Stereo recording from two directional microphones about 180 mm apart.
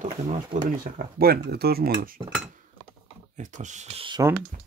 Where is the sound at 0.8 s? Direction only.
55° right (ahead or behind).